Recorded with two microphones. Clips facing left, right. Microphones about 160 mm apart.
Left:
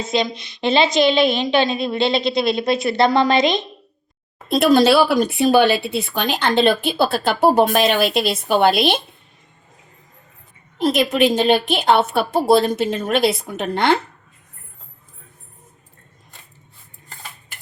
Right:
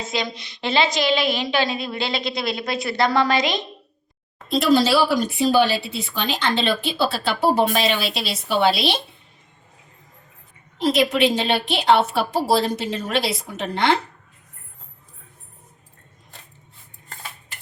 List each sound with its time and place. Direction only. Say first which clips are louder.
0.0 s a woman's voice: left 6 dB; 20° left (ahead or behind)
4.4 s speech: left 4 dB; 55° left (ahead or behind)
10.8 s speech: left 2 dB; 50° left (ahead or behind)